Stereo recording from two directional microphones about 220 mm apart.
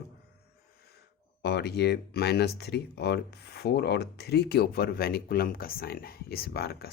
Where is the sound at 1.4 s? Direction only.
45° left (ahead or behind).